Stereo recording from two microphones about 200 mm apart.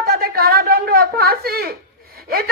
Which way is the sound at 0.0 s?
50° right (ahead or behind).